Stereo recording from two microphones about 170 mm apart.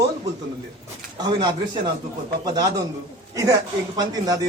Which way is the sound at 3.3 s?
20° right (ahead or behind).